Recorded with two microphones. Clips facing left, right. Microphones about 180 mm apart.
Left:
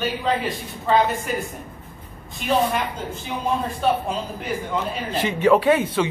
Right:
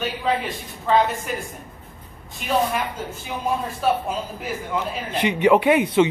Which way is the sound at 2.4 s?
Centre (ahead or behind).